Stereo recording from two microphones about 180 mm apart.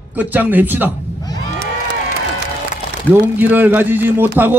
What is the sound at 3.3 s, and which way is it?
Speech, 10° right (ahead or behind).